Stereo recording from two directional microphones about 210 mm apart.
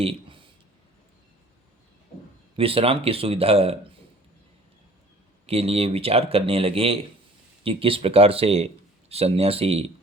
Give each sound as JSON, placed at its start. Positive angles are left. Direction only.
{"t": 0.0, "sound": "a sound", "side_deg": -25}
{"t": 2.6, "sound": "speech", "side_deg": -25}
{"t": 5.5, "sound": "speech", "side_deg": -30}